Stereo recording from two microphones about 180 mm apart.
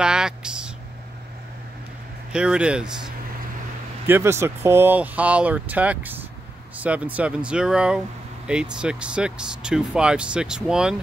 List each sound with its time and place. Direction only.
0.0 s speech: 5° right (ahead or behind)
2.3 s speech: 5° right (ahead or behind)
4.1 s speech: 15° right (ahead or behind)